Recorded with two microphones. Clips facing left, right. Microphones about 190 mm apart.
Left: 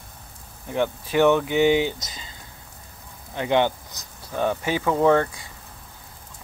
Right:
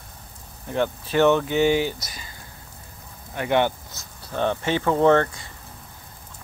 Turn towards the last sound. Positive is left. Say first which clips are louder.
# right 1 dB
turn(degrees=5)  # may be behind; listen again after turning